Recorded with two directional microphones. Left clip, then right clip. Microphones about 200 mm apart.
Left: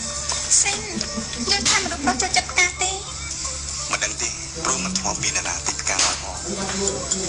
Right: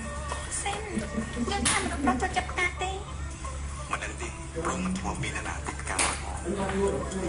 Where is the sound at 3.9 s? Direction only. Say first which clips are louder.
Left 9 dB; 30° left (ahead or behind).